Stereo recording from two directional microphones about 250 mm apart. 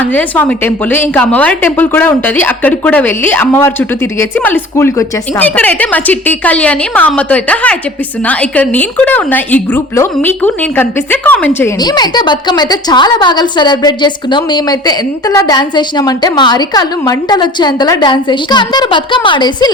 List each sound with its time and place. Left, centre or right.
0.0 s a woman's voice: centre